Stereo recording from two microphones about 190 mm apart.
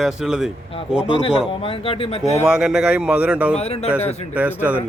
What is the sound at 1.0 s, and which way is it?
Speech, 25° left (ahead or behind).